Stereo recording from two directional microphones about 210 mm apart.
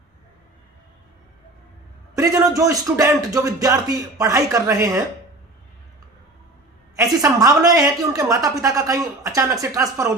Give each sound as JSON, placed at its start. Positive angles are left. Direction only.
{"t": 2.1, "sound": "speech", "side_deg": -15}
{"t": 6.9, "sound": "speech", "side_deg": -15}